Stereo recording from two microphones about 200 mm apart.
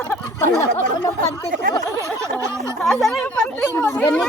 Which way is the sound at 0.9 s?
15° left (ahead or behind).